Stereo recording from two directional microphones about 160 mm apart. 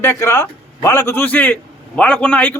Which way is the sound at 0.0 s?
15° left (ahead or behind).